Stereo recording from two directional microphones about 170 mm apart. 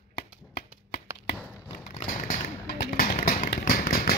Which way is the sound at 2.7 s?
60° left (ahead or behind).